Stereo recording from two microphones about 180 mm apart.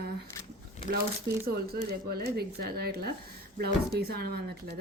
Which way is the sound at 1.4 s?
60° right (ahead or behind).